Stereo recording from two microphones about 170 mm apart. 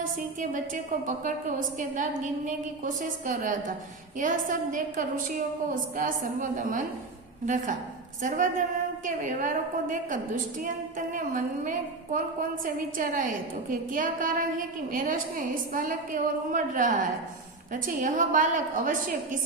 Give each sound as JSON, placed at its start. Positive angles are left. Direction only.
{"t": 0.3, "sound": "a woman's voice", "side_deg": -50}